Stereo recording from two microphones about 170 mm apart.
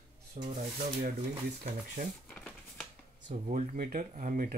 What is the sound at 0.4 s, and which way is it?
Speech, 45° right (ahead or behind).